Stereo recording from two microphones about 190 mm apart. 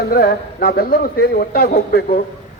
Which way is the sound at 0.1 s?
55° left (ahead or behind).